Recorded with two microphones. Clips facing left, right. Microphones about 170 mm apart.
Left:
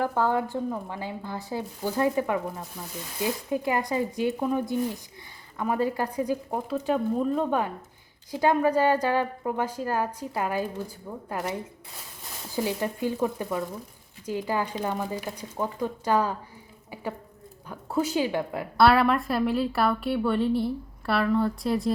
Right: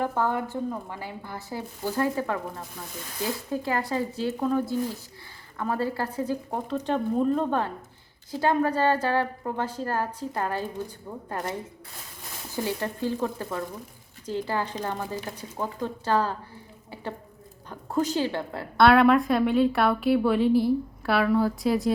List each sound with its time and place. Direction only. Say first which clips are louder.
0.1 s a woman's voice: left 2 dB; 15° left (ahead or behind)
12.5 s a woman's voice: left 1 dB; 15° left (ahead or behind)
18.8 s a woman's voice: right 3 dB; centre (ahead or behind)